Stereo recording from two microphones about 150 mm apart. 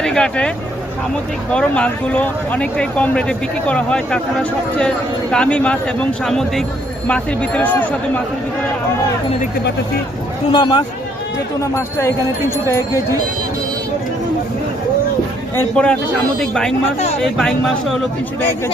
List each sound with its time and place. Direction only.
0.0 s speech: 5° left (ahead or behind)
1.5 s a man's voice: 5° left (ahead or behind)
10.5 s speech: 30° left (ahead or behind)
11.6 s speech: 20° left (ahead or behind)
15.5 s a man's voice: 5° left (ahead or behind)